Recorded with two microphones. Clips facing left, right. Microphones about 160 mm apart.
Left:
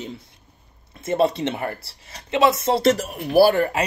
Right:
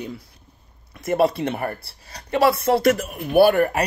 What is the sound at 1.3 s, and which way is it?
A woman's voice, 25° left (ahead or behind).